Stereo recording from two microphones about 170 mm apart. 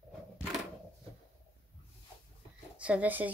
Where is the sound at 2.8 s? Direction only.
10° right (ahead or behind).